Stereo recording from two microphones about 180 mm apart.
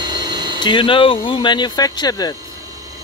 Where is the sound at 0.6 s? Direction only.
25° left (ahead or behind).